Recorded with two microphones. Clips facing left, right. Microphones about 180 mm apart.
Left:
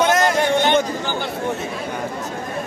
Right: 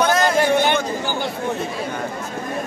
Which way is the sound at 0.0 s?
20° left (ahead or behind).